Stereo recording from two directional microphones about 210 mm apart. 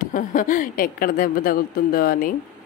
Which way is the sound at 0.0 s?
40° left (ahead or behind).